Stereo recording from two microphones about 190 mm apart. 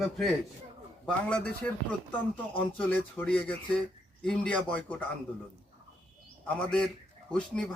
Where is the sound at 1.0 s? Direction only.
5° left (ahead or behind).